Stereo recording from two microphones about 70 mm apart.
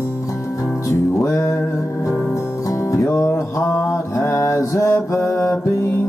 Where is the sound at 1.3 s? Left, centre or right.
Left.